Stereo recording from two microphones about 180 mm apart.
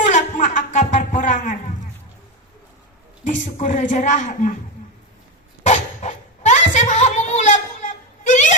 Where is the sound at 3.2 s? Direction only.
45° left (ahead or behind).